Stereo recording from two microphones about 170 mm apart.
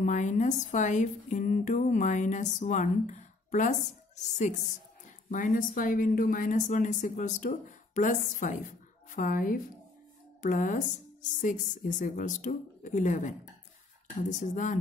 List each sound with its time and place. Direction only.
0.0 s speech: 45° left (ahead or behind)
14.4 s speech: 45° left (ahead or behind)